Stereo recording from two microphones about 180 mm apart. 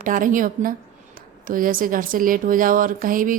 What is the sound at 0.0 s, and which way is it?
Speech, 50° right (ahead or behind).